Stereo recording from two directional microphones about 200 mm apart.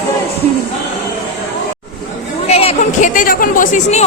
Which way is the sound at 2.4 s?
30° left (ahead or behind).